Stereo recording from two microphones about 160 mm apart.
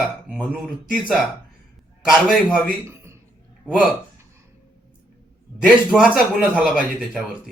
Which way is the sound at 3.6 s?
10° left (ahead or behind).